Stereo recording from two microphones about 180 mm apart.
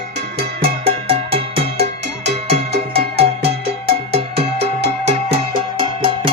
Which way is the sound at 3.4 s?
60° right (ahead or behind).